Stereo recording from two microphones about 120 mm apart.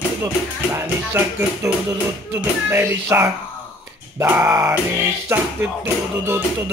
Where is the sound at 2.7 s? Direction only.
20° right (ahead or behind).